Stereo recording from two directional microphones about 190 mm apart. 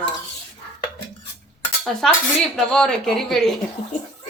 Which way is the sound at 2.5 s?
5° left (ahead or behind).